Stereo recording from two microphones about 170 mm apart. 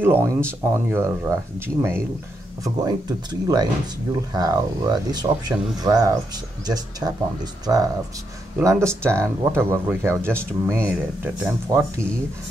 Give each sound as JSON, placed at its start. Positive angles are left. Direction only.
{"t": 0.0, "sound": "speech", "side_deg": -15}